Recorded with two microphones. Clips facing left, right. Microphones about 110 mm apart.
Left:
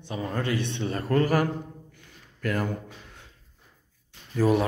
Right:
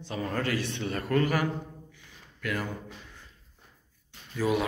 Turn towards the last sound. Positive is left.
turn(degrees=40)  # may be behind; listen again after turning